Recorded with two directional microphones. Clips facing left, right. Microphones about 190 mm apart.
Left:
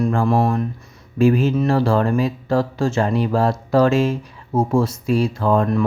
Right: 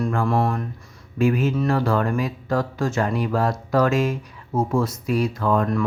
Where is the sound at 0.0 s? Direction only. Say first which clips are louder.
Left 4 dB; 25° left (ahead or behind).